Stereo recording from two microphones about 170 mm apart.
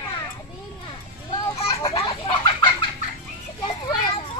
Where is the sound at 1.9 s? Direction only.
35° left (ahead or behind).